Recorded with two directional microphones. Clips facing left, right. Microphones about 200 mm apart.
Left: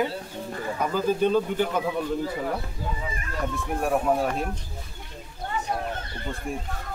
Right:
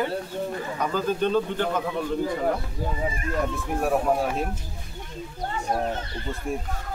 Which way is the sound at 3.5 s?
Centre (ahead or behind).